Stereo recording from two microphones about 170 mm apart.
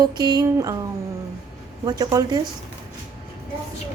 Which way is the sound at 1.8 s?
25° right (ahead or behind).